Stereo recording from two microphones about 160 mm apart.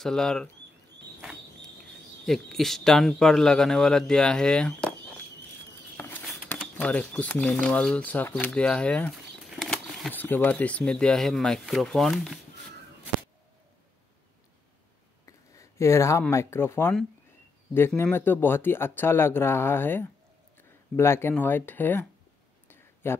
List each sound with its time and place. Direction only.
0.0 s a man's voice: 5° left (ahead or behind)
2.2 s a man's voice: centre (ahead or behind)
5.9 s a sound: 10° left (ahead or behind)
6.8 s speech: 10° left (ahead or behind)
10.1 s a man's voice: 10° left (ahead or behind)
15.2 s speech: 20° left (ahead or behind)
23.0 s speech: 15° left (ahead or behind)